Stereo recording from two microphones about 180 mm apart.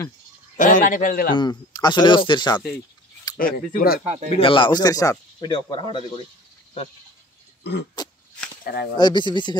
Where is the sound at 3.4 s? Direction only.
55° left (ahead or behind).